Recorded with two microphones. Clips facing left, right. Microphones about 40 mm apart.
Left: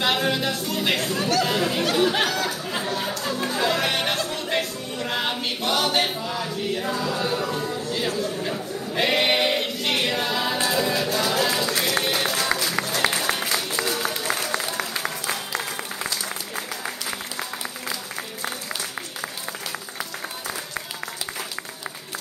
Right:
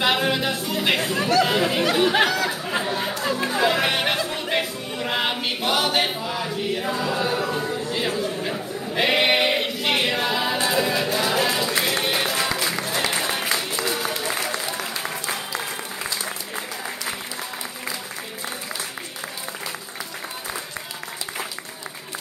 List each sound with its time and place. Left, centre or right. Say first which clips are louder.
0.0 s speech: right 1 dB; centre
2.3 s speech: right 2 dB; right
2.8 s speech: right 2 dB; centre
3.4 s music: right 2 dB; centre
13.0 s applause: left 3 dB; left
13.8 s applause: right 1 dB; centre